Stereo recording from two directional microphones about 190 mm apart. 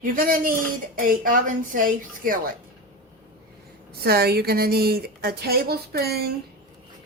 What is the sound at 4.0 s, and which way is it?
A woman's voice, 55° right (ahead or behind).